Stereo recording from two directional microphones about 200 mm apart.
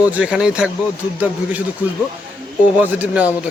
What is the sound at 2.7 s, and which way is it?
Speech, 10° right (ahead or behind).